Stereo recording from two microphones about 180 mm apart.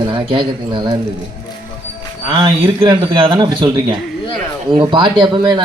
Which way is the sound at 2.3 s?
30° right (ahead or behind).